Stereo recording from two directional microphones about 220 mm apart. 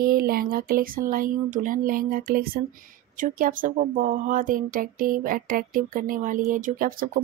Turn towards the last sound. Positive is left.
turn(degrees=-40)  # may be behind; listen again after turning